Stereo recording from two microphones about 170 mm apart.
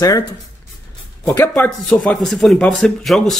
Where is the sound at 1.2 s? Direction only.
20° left (ahead or behind).